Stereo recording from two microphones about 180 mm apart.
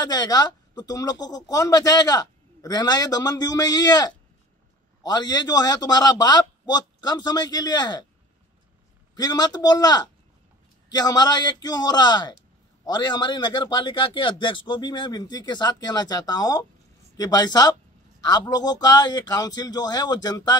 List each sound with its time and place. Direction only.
0.0 s a man's voice: 20° left (ahead or behind)
9.1 s a man's voice: 20° left (ahead or behind)